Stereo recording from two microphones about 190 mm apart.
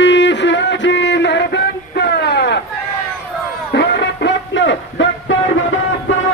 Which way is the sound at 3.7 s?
65° left (ahead or behind).